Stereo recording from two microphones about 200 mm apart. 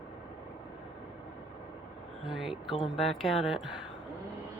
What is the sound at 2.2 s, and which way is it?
Speech, centre (ahead or behind).